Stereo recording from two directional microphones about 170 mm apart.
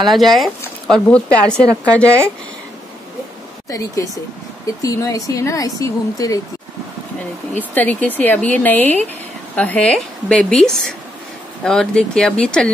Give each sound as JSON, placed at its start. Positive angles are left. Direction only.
{"t": 0.1, "sound": "a woman's voice", "side_deg": 0}
{"t": 3.7, "sound": "speech", "side_deg": 20}
{"t": 7.5, "sound": "a woman's voice", "side_deg": 10}